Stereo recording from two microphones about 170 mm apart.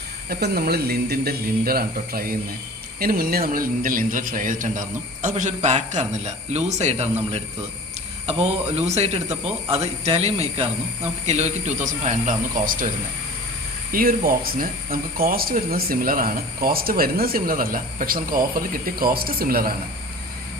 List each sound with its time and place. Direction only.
0.3 s a man's voice: 65° right (ahead or behind)
13.9 s speech: 55° right (ahead or behind)